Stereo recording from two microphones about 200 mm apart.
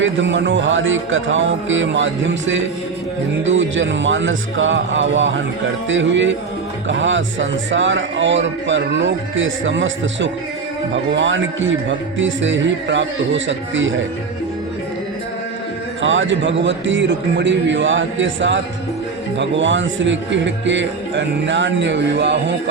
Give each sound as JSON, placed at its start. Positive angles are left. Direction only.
{"t": 0.0, "sound": "speech", "side_deg": -65}
{"t": 16.0, "sound": "speech", "side_deg": -70}